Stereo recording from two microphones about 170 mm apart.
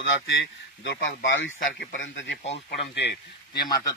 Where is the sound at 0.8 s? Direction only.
90° left.